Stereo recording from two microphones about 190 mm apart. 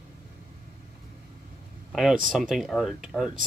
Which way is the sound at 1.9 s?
Centre (ahead or behind).